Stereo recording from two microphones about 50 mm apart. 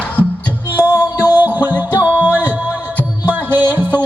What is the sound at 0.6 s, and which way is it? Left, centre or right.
Music, right.